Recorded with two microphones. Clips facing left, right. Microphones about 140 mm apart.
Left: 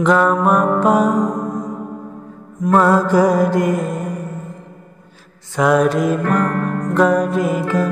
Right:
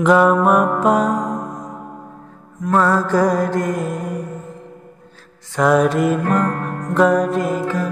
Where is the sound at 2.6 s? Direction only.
15° left (ahead or behind).